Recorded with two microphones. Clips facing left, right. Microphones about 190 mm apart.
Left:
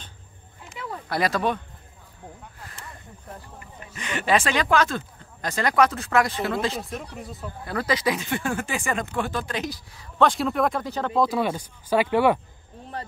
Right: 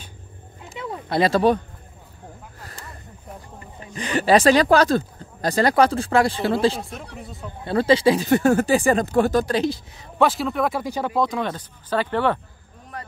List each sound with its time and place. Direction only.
0.7 s a sound: 25° right (ahead or behind)
3.5 s speech: 30° right (ahead or behind)
6.8 s speech: centre (ahead or behind)
7.6 s speech: 30° right (ahead or behind)
10.2 s speech: centre (ahead or behind)
11.1 s speech: 5° left (ahead or behind)
12.9 s a sound: 30° left (ahead or behind)